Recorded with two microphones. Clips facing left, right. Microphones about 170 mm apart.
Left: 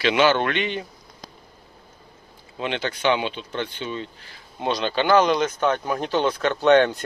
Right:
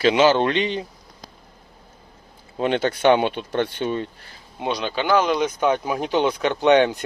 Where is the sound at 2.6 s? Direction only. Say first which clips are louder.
Right 6 dB; 45° right (ahead or behind).